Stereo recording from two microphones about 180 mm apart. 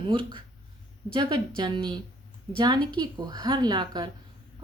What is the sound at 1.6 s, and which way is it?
Female singing, 25° right (ahead or behind).